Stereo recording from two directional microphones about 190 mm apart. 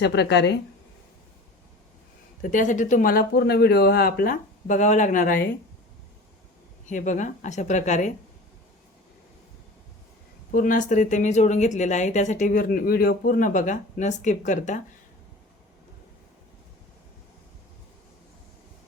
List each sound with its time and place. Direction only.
0.0 s speech: 65° left (ahead or behind)
2.4 s speech: 45° left (ahead or behind)
6.8 s speech: 40° left (ahead or behind)
10.5 s speech: 45° left (ahead or behind)